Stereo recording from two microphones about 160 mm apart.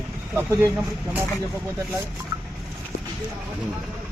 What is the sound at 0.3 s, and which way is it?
Speech, 15° right (ahead or behind).